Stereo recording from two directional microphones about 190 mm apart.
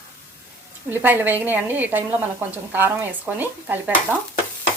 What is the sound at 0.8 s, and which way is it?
A woman's voice, 10° right (ahead or behind).